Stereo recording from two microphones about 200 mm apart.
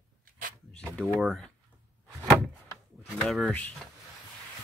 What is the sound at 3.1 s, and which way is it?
Speech, centre (ahead or behind).